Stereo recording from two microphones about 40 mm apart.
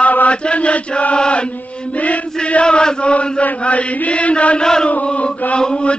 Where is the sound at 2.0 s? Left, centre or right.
Left.